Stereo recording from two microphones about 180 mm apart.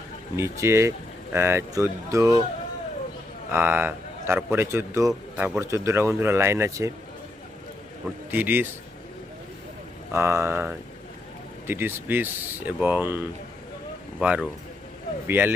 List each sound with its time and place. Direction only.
0.3 s speech: 15° right (ahead or behind)
3.5 s a man's voice: 10° right (ahead or behind)
8.3 s speech: 10° right (ahead or behind)
10.1 s speech: 15° right (ahead or behind)